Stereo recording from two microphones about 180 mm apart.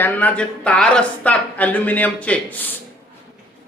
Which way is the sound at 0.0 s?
10° left (ahead or behind).